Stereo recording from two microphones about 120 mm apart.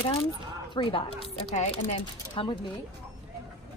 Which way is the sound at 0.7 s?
50° left (ahead or behind).